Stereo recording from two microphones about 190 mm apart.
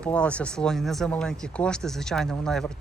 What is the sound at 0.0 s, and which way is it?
Speech, 5° left (ahead or behind).